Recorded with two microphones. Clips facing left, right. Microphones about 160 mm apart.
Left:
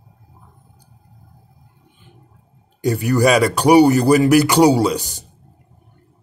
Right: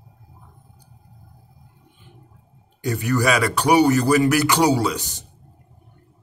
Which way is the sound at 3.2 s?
35° left (ahead or behind).